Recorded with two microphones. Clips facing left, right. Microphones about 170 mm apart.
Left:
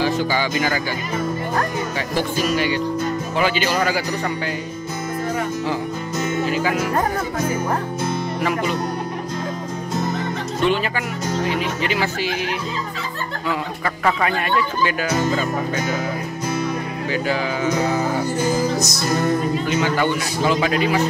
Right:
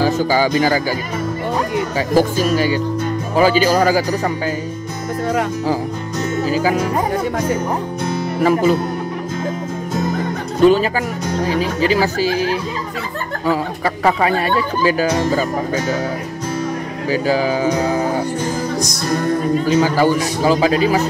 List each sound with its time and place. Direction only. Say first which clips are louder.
0.0 s speech: right 5 dB; 40° right (ahead or behind)
2.1 s speech: right 6 dB; 40° right (ahead or behind)
6.4 s speech: right 6 dB; 35° right (ahead or behind)
8.4 s speech: right 10 dB; 40° right (ahead or behind)
10.6 s speech: right 9 dB; 40° right (ahead or behind)
17.1 s speech: right 6 dB; 35° right (ahead or behind)
18.4 s music: left 1 dB; 5° left (ahead or behind)
19.5 s speech: right 5 dB; 35° right (ahead or behind)